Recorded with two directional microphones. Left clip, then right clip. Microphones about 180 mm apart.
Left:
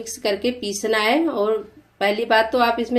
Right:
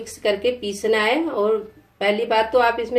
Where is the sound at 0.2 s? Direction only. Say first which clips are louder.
Right 2 dB; 45° left (ahead or behind).